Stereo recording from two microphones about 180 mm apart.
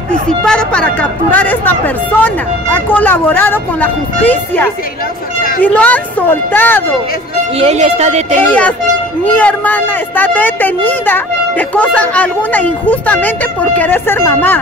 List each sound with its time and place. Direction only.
0.1 s speech: 5° left (ahead or behind)
7.5 s speech: 35° right (ahead or behind)
8.4 s speech: 10° left (ahead or behind)